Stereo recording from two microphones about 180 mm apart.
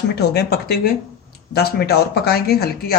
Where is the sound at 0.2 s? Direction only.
60° left (ahead or behind).